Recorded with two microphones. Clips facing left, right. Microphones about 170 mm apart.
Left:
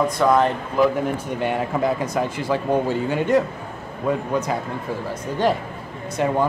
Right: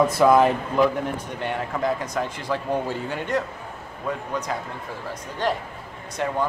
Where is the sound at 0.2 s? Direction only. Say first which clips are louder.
Right 1 dB; 5° right (ahead or behind).